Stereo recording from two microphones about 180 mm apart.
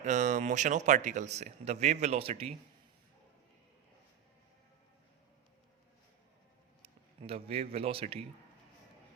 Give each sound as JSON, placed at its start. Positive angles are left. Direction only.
{"t": 0.0, "sound": "speech", "side_deg": -40}
{"t": 6.8, "sound": "speech", "side_deg": -30}